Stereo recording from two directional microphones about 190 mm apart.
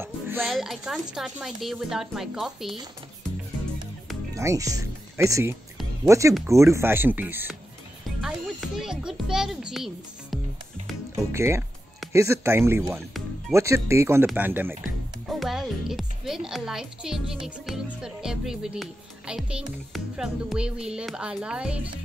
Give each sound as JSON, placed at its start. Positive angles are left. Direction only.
{"t": 0.0, "sound": "music", "side_deg": -10}
{"t": 0.5, "sound": "speech", "side_deg": 0}
{"t": 4.4, "sound": "a child's voice", "side_deg": -15}
{"t": 11.3, "sound": "speech", "side_deg": -15}
{"t": 14.8, "sound": "speech", "side_deg": 0}